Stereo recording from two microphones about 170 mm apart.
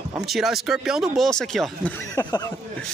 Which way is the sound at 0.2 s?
Centre (ahead or behind).